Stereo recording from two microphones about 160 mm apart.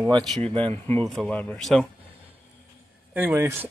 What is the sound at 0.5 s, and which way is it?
Speech, 35° right (ahead or behind).